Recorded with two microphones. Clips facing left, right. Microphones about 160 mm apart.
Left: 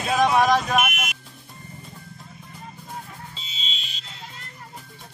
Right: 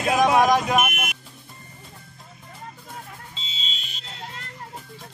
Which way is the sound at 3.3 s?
25° right (ahead or behind).